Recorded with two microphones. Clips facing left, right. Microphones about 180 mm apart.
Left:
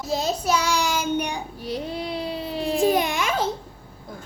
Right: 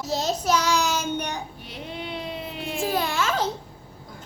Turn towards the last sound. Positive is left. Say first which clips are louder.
# left 2 dB
turn(degrees=15)  # may be behind; listen again after turning